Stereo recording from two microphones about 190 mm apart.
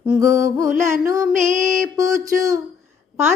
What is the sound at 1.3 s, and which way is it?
Music, 40° right (ahead or behind).